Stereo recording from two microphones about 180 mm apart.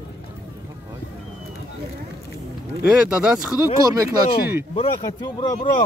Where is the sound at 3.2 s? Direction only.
5° right (ahead or behind).